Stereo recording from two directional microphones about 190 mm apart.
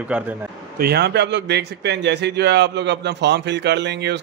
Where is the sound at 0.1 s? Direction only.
5° right (ahead or behind).